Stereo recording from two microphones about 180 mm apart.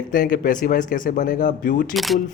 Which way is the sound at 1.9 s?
Centre (ahead or behind).